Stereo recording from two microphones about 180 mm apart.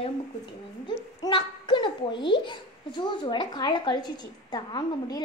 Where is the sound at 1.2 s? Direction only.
25° left (ahead or behind).